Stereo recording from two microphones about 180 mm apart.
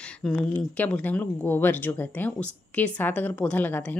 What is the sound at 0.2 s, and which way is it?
Speech, 5° left (ahead or behind).